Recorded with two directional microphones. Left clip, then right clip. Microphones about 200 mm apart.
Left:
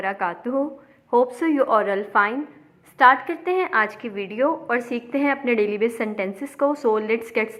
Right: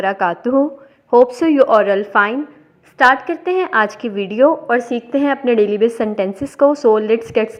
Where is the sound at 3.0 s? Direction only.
15° right (ahead or behind).